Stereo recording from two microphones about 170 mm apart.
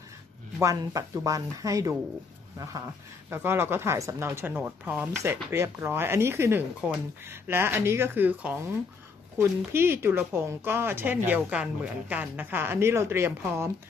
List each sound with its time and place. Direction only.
0.6 s speech: 20° right (ahead or behind)
3.3 s speech: 15° right (ahead or behind)